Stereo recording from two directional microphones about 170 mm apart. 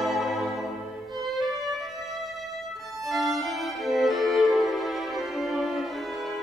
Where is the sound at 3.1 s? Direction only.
Centre (ahead or behind).